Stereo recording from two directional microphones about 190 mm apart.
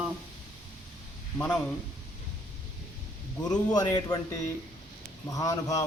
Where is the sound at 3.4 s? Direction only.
20° left (ahead or behind).